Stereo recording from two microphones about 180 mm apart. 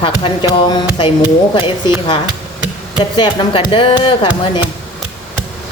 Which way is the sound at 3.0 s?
25° left (ahead or behind).